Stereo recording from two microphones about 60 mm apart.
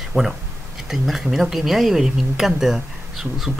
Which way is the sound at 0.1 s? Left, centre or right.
Left.